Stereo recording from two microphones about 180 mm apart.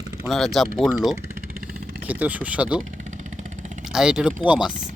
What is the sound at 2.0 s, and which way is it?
Speech, 10° right (ahead or behind).